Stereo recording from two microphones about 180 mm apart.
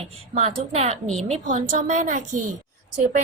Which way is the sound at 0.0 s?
35° right (ahead or behind).